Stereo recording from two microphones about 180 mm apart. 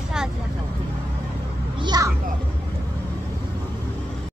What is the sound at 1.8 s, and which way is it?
Speech, 20° right (ahead or behind).